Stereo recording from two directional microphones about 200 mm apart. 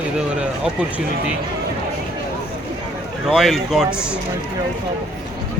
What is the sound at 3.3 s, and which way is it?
Speech, centre (ahead or behind).